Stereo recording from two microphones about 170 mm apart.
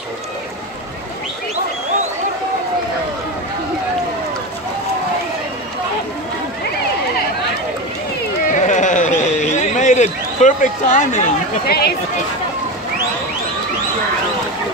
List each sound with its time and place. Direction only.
8.5 s sheep: 45° left (ahead or behind)
11.6 s speech: 65° left (ahead or behind)